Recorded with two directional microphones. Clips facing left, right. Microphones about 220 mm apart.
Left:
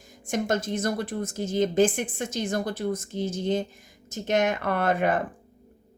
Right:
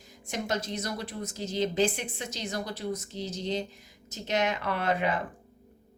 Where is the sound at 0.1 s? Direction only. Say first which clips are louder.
Left 6 dB; 50° left (ahead or behind).